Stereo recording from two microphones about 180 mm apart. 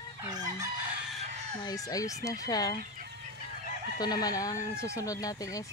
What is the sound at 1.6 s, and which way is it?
Speech, 20° left (ahead or behind).